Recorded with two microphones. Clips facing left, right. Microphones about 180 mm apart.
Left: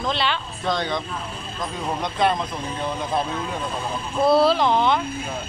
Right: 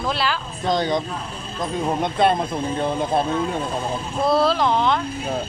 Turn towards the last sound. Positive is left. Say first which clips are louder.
# even
turn(degrees=0)  # may be behind; listen again after turning